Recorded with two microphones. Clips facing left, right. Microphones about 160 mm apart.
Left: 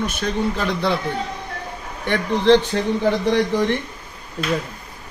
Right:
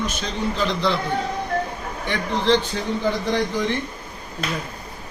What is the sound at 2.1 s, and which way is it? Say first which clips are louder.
Speech: left 5 dB; 65° left (ahead or behind).